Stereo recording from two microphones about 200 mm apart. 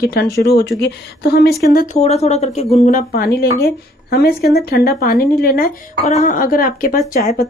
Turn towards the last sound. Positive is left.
turn(degrees=45)  # may be behind; listen again after turning